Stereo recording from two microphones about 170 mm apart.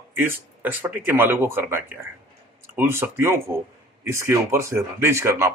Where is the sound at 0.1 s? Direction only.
10° right (ahead or behind).